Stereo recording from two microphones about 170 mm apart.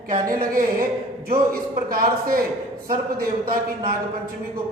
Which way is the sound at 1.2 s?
60° right (ahead or behind).